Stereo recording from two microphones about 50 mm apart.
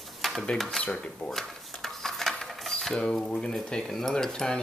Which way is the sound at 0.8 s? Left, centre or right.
Left.